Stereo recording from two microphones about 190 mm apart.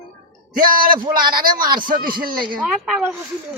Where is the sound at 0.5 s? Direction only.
50° right (ahead or behind).